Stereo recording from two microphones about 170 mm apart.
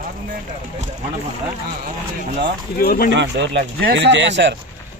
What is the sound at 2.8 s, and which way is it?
Speech, 60° left (ahead or behind).